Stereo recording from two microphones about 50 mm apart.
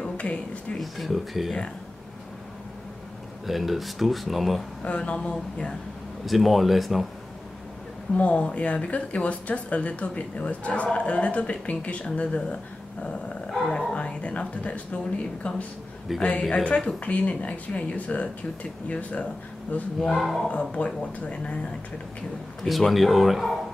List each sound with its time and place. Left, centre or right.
0.0 s speech: left
0.7 s speech: centre
3.4 s speech: centre
4.8 s a woman's voice: left
6.2 s speech: centre
8.1 s a woman's voice: left
13.0 s dog: left
13.5 s speech: centre
13.9 s a woman's voice: left
20.2 s speech: centre
20.7 s a woman's voice: left
22.6 s speech: centre